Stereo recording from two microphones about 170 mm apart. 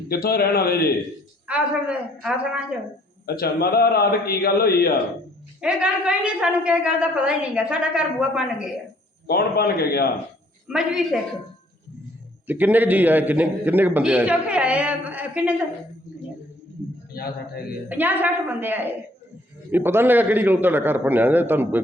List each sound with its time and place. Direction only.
0.1 s a man's voice: 65° left (ahead or behind)
1.5 s a man's voice: 5° right (ahead or behind)
3.2 s a man's voice: 65° left (ahead or behind)
5.5 s a man's voice: 5° right (ahead or behind)
9.2 s a man's voice: 65° left (ahead or behind)
10.7 s a woman's voice: 5° right (ahead or behind)
12.5 s a man's voice: 10° right (ahead or behind)
17.2 s a man's voice: 65° left (ahead or behind)
17.8 s a man's voice: 10° right (ahead or behind)